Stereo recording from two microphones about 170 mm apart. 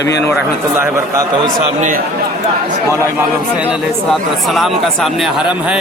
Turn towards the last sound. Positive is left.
turn(degrees=-5)  # may be behind; listen again after turning